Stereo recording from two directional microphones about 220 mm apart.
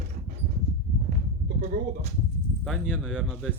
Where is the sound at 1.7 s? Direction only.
35° right (ahead or behind).